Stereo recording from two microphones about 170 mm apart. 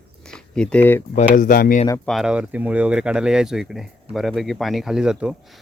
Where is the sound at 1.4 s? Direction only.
55° left (ahead or behind).